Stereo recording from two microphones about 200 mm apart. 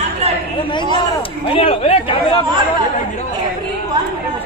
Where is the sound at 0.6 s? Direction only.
25° left (ahead or behind).